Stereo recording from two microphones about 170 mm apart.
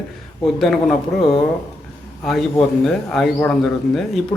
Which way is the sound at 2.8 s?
Centre (ahead or behind).